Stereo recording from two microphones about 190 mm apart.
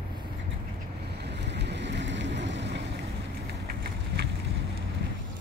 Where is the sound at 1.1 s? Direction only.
60° right (ahead or behind).